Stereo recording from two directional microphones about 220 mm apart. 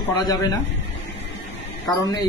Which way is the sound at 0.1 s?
15° left (ahead or behind).